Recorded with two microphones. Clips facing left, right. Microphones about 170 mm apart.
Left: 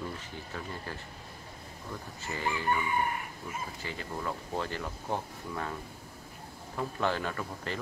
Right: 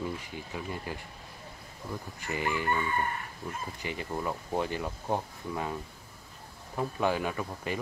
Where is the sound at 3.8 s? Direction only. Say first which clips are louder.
Right 6 dB; 15° right (ahead or behind).